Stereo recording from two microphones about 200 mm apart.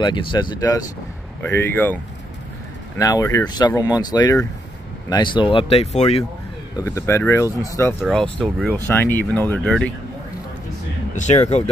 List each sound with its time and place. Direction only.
0.0 s speech: 25° left (ahead or behind)
3.0 s speech: 15° left (ahead or behind)
6.8 s speech: 15° left (ahead or behind)
8.0 s speech: 5° left (ahead or behind)
11.1 s speech: 35° left (ahead or behind)